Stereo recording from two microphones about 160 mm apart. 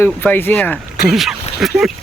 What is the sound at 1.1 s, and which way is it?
Speech, centre (ahead or behind).